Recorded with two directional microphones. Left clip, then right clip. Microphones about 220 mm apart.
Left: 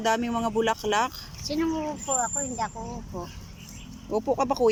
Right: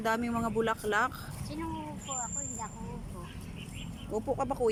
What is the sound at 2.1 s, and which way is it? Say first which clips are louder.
Speech: left 10 dB; 50° left (ahead or behind).